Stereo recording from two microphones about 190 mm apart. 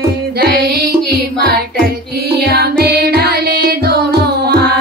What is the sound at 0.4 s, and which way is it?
Music, 55° right (ahead or behind).